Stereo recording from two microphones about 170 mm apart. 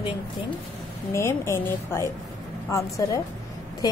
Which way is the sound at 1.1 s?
15° left (ahead or behind).